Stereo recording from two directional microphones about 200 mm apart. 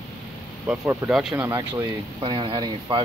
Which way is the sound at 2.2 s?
25° right (ahead or behind).